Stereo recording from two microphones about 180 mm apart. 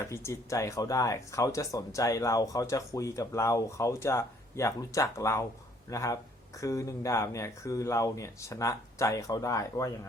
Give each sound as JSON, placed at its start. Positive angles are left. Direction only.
{"t": 0.0, "sound": "speech", "side_deg": 15}